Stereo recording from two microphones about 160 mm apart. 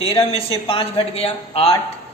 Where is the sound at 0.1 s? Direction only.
35° left (ahead or behind).